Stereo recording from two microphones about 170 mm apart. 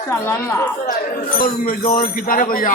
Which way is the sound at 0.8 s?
60° left (ahead or behind).